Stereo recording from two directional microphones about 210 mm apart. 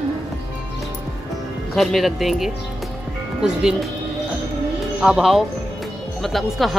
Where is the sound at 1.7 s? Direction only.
Centre (ahead or behind).